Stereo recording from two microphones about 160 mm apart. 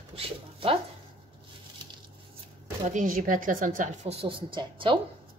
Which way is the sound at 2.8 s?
55° right (ahead or behind).